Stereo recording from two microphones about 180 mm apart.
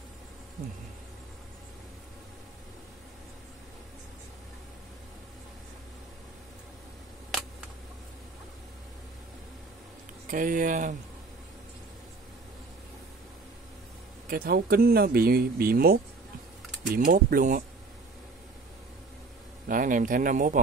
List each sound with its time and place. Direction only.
10.2 s speech: 50° right (ahead or behind)
14.2 s speech: 55° right (ahead or behind)
19.7 s speech: 45° right (ahead or behind)